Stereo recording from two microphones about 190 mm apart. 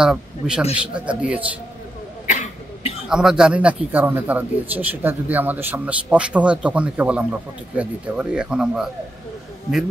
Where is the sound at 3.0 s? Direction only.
5° right (ahead or behind).